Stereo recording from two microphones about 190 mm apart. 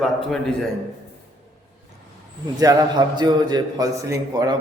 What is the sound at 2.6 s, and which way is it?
A man's voice, 20° right (ahead or behind).